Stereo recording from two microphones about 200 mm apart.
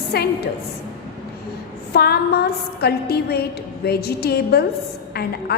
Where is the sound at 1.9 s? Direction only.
55° left (ahead or behind).